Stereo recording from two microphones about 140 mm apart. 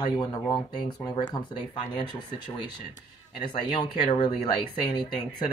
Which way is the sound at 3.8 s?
35° left (ahead or behind).